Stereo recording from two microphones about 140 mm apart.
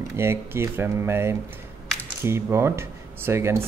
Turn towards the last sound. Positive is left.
turn(degrees=-20)  # may be behind; listen again after turning